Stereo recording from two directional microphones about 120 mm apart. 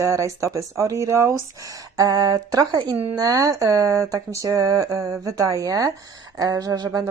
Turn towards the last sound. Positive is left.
turn(degrees=-30)  # may be behind; listen again after turning